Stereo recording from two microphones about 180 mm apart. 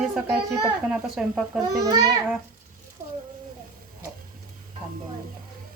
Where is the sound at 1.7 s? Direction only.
20° right (ahead or behind).